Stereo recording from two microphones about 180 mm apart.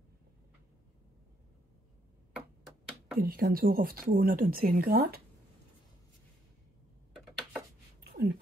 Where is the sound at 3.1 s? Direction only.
55° right (ahead or behind).